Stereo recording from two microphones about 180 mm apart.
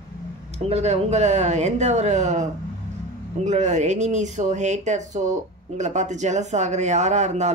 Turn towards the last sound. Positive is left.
turn(degrees=-40)  # may be behind; listen again after turning